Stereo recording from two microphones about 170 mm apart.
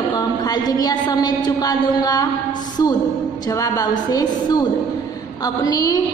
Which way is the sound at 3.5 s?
20° left (ahead or behind).